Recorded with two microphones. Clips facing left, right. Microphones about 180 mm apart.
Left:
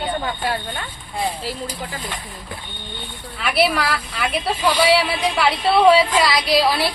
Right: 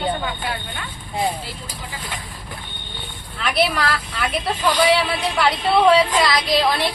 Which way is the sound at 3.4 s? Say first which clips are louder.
Left 1 dB; 10° left (ahead or behind).